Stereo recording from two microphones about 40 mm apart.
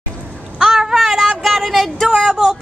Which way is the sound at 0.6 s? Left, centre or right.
Centre.